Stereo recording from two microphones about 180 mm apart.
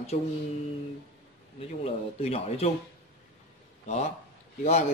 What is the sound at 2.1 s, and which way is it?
Speech, 35° left (ahead or behind).